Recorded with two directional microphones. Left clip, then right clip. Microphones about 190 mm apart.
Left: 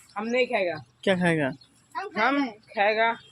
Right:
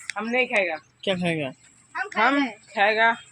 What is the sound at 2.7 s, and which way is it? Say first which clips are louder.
Speech: right 3 dB; 55° right (ahead or behind).